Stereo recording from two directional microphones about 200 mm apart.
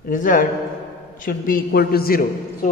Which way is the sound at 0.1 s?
45° left (ahead or behind).